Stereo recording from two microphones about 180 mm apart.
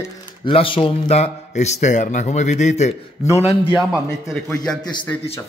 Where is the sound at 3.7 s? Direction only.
5° right (ahead or behind).